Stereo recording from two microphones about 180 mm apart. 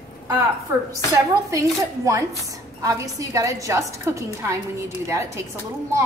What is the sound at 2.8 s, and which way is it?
A woman's voice, 20° right (ahead or behind).